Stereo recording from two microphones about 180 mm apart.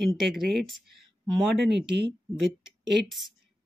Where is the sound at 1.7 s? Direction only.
70° right (ahead or behind).